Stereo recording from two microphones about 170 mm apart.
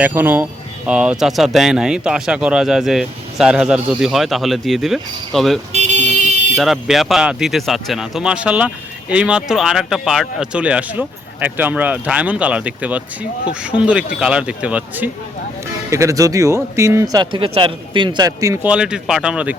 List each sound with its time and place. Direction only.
0.0 s speech: 10° right (ahead or behind)
5.7 s vehicle: 40° right (ahead or behind)
6.6 s speech: centre (ahead or behind); by 18.7 s 20° right (ahead or behind)
18.7 s speech: 5° right (ahead or behind)